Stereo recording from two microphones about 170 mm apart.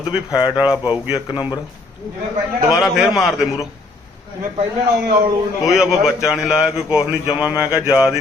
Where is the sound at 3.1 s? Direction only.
Centre (ahead or behind).